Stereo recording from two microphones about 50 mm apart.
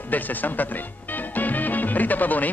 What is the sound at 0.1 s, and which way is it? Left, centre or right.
Speech, left.